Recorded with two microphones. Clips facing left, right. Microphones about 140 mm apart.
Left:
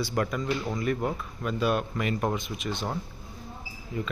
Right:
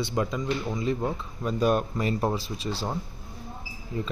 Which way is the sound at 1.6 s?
35° right (ahead or behind).